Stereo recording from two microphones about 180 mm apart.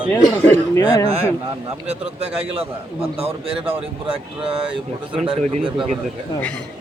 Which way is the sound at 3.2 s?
30° right (ahead or behind).